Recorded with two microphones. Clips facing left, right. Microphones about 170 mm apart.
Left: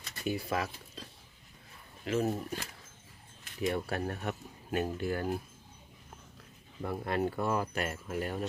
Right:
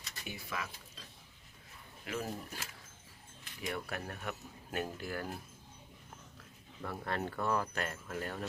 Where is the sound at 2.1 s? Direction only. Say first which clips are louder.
Left 9 dB; 25° left (ahead or behind).